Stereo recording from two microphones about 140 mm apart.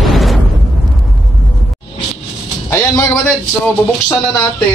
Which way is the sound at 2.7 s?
20° left (ahead or behind).